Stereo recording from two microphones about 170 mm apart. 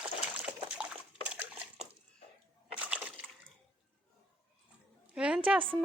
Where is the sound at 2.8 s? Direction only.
5° right (ahead or behind).